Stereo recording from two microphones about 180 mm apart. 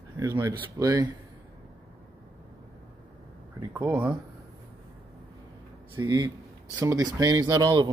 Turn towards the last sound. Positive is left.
turn(degrees=-20)  # may be behind; listen again after turning